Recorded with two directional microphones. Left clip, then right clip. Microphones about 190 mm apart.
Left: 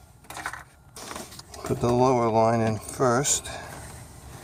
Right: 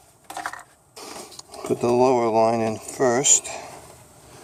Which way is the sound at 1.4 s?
20° right (ahead or behind).